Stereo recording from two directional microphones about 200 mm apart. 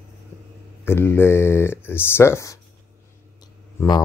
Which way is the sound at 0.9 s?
10° left (ahead or behind).